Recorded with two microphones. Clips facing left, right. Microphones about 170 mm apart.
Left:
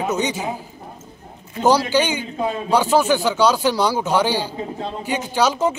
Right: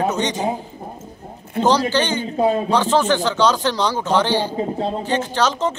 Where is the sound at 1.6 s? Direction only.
10° left (ahead or behind).